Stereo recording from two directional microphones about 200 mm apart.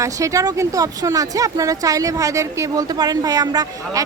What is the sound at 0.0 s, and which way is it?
Speech, 15° right (ahead or behind).